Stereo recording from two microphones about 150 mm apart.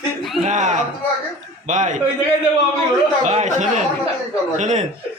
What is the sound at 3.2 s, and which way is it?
A man's voice, 50° right (ahead or behind).